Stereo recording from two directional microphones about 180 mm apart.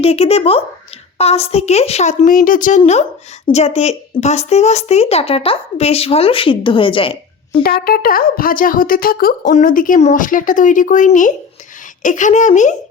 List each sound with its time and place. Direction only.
0.0 s speech: 35° left (ahead or behind)
7.6 s speech: 55° left (ahead or behind)